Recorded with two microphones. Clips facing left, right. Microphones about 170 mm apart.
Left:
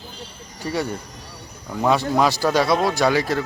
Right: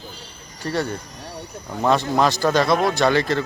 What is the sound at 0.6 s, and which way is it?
Speech, 10° left (ahead or behind).